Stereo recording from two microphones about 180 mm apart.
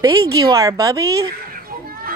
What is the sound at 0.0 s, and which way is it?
A woman's voice, 20° right (ahead or behind).